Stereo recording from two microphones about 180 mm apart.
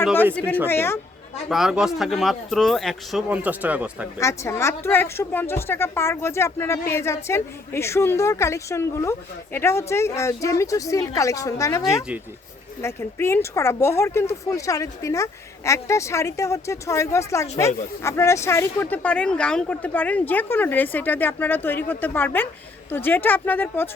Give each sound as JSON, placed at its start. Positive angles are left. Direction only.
{"t": 0.7, "sound": "speech", "side_deg": 15}
{"t": 1.5, "sound": "speech", "side_deg": -5}
{"t": 4.2, "sound": "speech", "side_deg": 15}
{"t": 12.8, "sound": "speech", "side_deg": 15}